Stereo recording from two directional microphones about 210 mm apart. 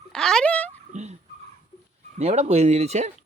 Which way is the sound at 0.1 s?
Centre (ahead or behind).